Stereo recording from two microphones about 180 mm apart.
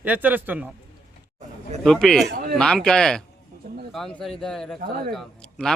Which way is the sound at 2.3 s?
55° right (ahead or behind).